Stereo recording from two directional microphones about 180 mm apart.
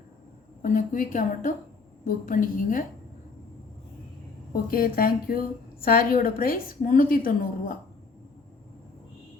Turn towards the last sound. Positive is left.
turn(degrees=50)  # may be behind; listen again after turning